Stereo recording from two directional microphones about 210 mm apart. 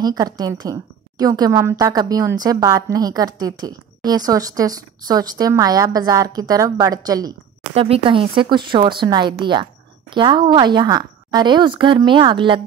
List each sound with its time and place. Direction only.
0.0 s a woman's voice: 20° right (ahead or behind)